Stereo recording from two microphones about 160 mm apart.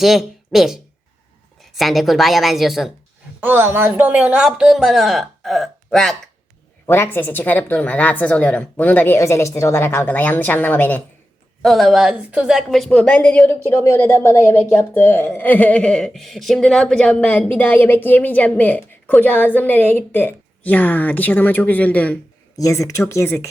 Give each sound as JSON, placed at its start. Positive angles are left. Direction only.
{"t": 0.0, "sound": "speech", "side_deg": 0}
{"t": 3.4, "sound": "speech", "side_deg": -15}
{"t": 6.8, "sound": "speech", "side_deg": 15}
{"t": 11.6, "sound": "speech", "side_deg": 0}
{"t": 22.5, "sound": "speech", "side_deg": 20}